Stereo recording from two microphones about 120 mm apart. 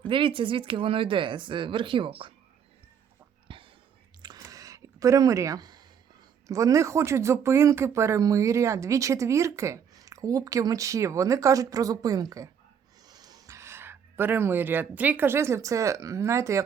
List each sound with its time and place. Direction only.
0.1 s speech: 45° right (ahead or behind)
3.5 s whispering: 45° right (ahead or behind)
4.2 s a sound: 35° right (ahead or behind)
6.5 s speech: 25° right (ahead or behind)